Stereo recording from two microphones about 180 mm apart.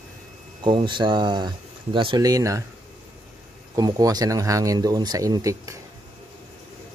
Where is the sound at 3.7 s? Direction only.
20° right (ahead or behind).